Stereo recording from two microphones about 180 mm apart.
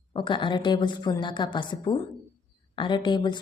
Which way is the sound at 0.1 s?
25° left (ahead or behind).